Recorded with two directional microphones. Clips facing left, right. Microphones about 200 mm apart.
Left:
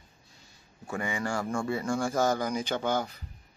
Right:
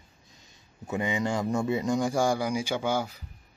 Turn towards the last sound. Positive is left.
turn(degrees=-10)  # may be behind; listen again after turning